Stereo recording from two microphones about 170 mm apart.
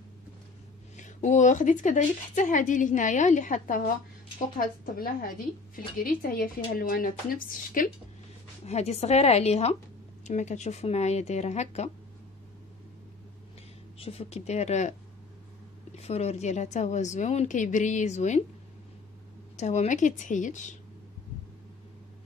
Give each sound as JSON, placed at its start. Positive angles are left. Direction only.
{"t": 0.9, "sound": "speech", "side_deg": 45}
{"t": 8.6, "sound": "speech", "side_deg": 40}
{"t": 13.9, "sound": "speech", "side_deg": 35}
{"t": 16.0, "sound": "speech", "side_deg": 40}
{"t": 19.5, "sound": "speech", "side_deg": 40}